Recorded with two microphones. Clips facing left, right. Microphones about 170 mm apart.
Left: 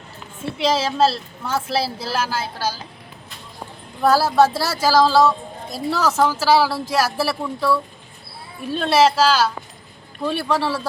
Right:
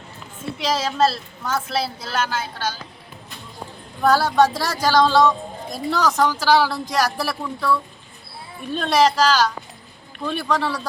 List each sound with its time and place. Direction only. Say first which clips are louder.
0.6 s a woman's voice: left 2 dB; 30° left (ahead or behind)
2.0 s a woman's voice: left 1 dB; 10° left (ahead or behind)
4.0 s speech: left 1 dB; 5° left (ahead or behind)